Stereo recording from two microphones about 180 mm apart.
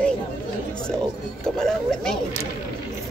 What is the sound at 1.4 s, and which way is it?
Speech, 5° left (ahead or behind).